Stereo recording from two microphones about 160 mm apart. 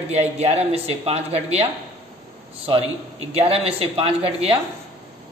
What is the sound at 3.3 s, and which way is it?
Speech, 40° right (ahead or behind).